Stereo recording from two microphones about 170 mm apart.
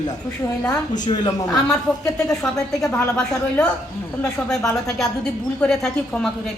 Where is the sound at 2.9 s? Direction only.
5° left (ahead or behind).